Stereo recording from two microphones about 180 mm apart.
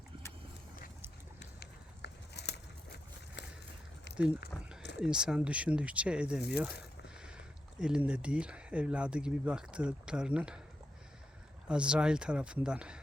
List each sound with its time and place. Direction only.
1.4 s a sound: 70° left (ahead or behind)
4.5 s speech: 10° left (ahead or behind)
4.9 s speech: 5° right (ahead or behind)
11.7 s speech: 5° right (ahead or behind)